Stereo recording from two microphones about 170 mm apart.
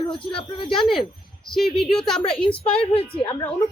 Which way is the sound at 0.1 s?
30° left (ahead or behind).